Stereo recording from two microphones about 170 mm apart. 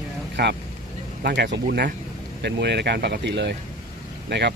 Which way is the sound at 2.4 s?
80° right.